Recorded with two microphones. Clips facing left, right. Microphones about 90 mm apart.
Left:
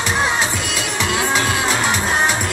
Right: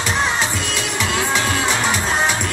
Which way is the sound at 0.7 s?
5° left (ahead or behind).